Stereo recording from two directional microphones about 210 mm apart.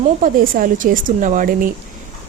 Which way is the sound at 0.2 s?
40° right (ahead or behind).